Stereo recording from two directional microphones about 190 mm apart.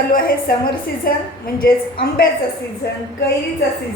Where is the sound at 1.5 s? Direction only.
50° left (ahead or behind).